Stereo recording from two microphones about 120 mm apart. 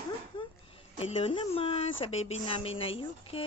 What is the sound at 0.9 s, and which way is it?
A woman's voice, 55° left (ahead or behind).